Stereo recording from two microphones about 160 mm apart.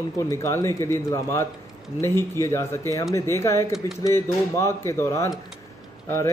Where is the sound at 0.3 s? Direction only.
20° left (ahead or behind).